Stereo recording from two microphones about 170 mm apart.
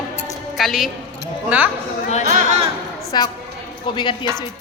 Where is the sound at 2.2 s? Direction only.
45° right (ahead or behind).